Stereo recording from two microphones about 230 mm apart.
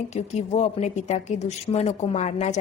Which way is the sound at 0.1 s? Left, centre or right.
Left.